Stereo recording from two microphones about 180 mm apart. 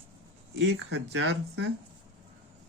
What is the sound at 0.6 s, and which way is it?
A man's voice, 75° right (ahead or behind).